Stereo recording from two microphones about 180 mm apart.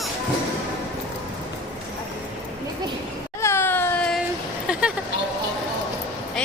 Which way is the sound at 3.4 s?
15° left (ahead or behind).